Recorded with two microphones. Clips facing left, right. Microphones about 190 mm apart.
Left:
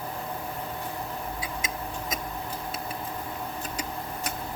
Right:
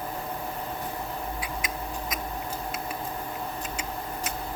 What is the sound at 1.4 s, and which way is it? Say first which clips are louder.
Tick-tock: right 1 dB; 25° left (ahead or behind).